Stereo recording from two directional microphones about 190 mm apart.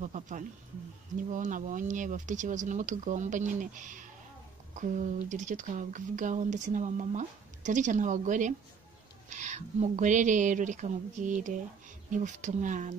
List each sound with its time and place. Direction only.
0.0 s speech: 40° right (ahead or behind)